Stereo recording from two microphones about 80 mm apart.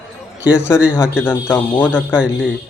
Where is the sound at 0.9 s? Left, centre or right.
Left.